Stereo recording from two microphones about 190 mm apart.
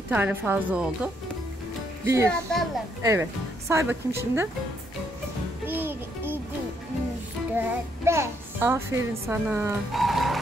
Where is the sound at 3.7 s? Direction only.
15° right (ahead or behind).